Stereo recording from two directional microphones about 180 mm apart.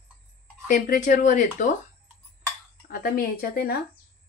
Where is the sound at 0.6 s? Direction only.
45° left (ahead or behind).